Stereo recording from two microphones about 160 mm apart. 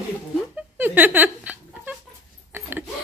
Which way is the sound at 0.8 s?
10° right (ahead or behind).